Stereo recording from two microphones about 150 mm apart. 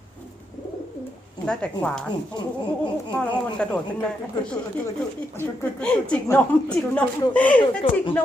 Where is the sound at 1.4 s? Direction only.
5° left (ahead or behind).